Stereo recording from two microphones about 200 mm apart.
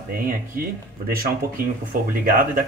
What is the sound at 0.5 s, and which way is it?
Speech, 45° right (ahead or behind).